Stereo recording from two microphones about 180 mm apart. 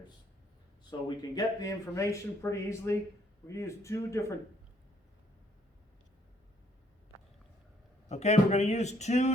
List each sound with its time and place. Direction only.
0.9 s speech: 20° left (ahead or behind)
8.1 s speech: 40° left (ahead or behind)